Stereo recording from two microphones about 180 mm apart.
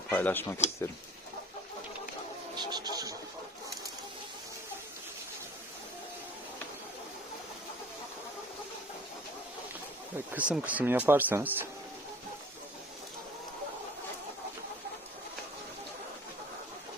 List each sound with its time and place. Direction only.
0.1 s speech: 10° left (ahead or behind)
2.6 s a sound: 25° right (ahead or behind)
10.3 s speech: 5° right (ahead or behind)